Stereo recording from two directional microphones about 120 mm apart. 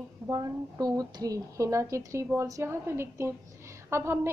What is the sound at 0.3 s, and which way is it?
A woman's voice, 30° right (ahead or behind).